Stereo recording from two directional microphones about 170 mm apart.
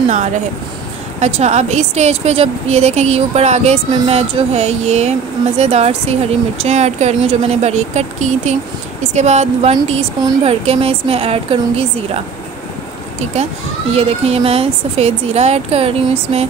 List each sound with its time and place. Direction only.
1.2 s speech: 40° right (ahead or behind)
13.9 s speech: 35° right (ahead or behind)